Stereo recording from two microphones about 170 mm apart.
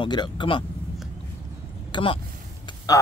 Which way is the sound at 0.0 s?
25° left (ahead or behind).